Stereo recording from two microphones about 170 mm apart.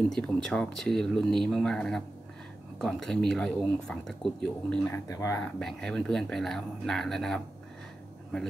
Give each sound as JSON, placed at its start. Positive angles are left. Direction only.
{"t": 0.1, "sound": "speech", "side_deg": 5}
{"t": 5.6, "sound": "speech", "side_deg": 5}